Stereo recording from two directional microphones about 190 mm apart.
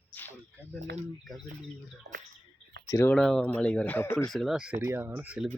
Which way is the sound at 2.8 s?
15° left (ahead or behind).